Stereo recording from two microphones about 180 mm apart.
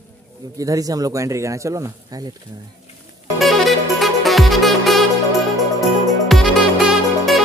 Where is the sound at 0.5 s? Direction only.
20° right (ahead or behind).